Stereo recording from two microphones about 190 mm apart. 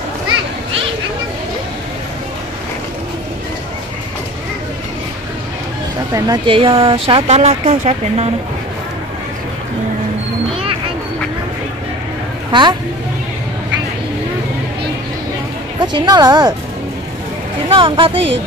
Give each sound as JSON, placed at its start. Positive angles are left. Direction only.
{"t": 6.1, "sound": "speech", "side_deg": -20}
{"t": 12.4, "sound": "a sound", "side_deg": -25}
{"t": 15.8, "sound": "speech", "side_deg": -20}
{"t": 17.6, "sound": "speech", "side_deg": -25}